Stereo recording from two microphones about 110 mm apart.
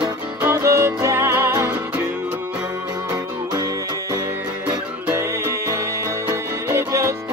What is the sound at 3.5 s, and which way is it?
Music, 35° right (ahead or behind).